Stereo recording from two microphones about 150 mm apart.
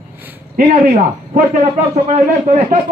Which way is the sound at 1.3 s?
60° right (ahead or behind).